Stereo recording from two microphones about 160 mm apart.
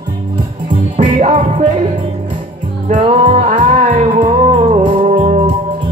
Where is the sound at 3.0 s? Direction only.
35° right (ahead or behind).